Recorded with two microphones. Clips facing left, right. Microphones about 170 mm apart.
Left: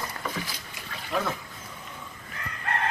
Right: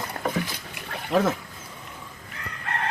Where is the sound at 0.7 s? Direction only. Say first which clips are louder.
Right 7 dB; 60° right (ahead or behind).